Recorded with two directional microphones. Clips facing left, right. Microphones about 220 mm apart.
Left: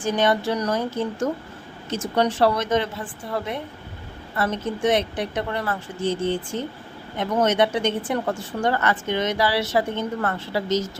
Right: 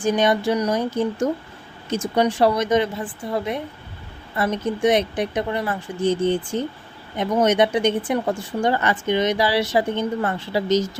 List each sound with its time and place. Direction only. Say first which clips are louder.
0.0 s speech: right 2 dB; 15° right (ahead or behind)